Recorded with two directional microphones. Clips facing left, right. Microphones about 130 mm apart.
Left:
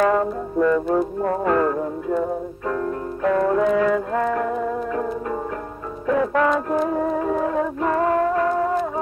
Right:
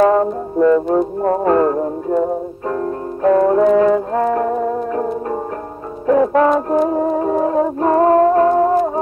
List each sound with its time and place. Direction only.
0.0 s music: 30° right (ahead or behind)